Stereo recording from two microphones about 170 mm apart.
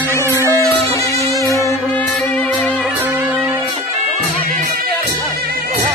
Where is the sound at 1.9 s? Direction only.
5° left (ahead or behind).